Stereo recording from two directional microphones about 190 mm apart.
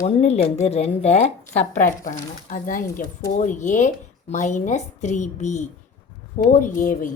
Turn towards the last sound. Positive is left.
turn(degrees=40)  # may be behind; listen again after turning